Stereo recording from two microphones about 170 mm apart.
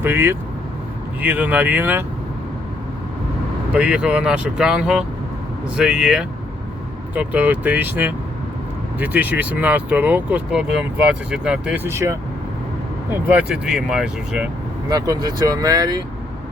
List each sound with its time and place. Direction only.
0.0 s speech: 15° right (ahead or behind)
3.7 s speech: 5° right (ahead or behind)
14.8 s speech: 20° right (ahead or behind)